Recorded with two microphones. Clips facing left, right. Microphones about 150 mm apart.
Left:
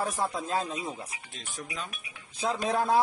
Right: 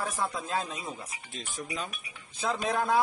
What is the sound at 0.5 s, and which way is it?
Speech, 35° left (ahead or behind).